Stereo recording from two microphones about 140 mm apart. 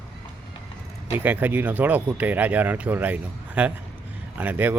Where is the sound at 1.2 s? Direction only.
15° right (ahead or behind).